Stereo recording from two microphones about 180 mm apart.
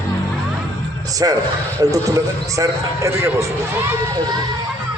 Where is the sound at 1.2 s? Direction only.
20° right (ahead or behind).